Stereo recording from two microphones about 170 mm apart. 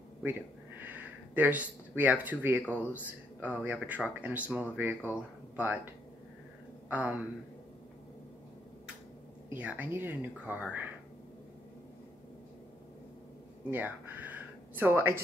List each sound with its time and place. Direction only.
0.2 s speech: 10° right (ahead or behind)
6.9 s speech: 10° right (ahead or behind)
9.5 s speech: 10° right (ahead or behind)
13.7 s speech: 10° right (ahead or behind)